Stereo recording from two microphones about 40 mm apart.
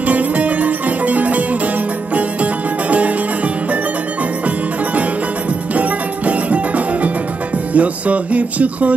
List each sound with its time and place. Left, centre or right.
0.0 s music: right
5.8 s music: right